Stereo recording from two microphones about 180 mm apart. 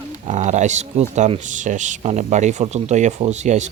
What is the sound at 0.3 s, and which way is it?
Speech, 40° right (ahead or behind).